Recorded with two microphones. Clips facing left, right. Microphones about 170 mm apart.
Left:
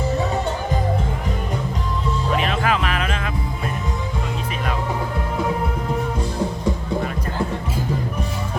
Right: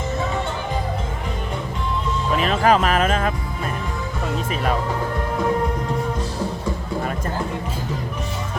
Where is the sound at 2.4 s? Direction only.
40° right (ahead or behind).